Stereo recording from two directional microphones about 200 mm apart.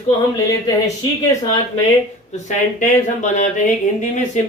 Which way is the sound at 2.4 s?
40° left (ahead or behind).